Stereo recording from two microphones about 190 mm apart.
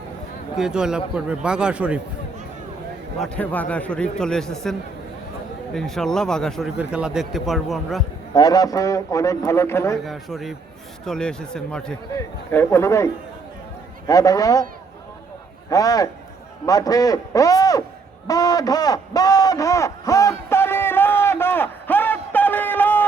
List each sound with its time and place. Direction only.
0.5 s a man's voice: 5° right (ahead or behind)
3.2 s a man's voice: 5° left (ahead or behind)
8.3 s speech: 20° left (ahead or behind)
10.0 s a man's voice: centre (ahead or behind)
14.1 s a man's voice: 20° left (ahead or behind)
15.7 s a man's voice: 20° left (ahead or behind)
18.3 s a sound: 20° left (ahead or behind)